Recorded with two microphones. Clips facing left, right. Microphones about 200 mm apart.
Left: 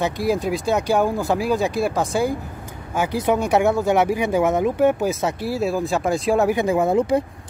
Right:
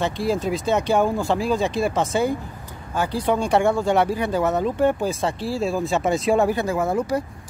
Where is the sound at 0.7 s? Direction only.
5° left (ahead or behind).